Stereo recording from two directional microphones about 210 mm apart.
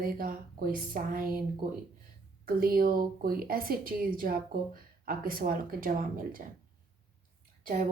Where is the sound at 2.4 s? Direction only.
45° right (ahead or behind).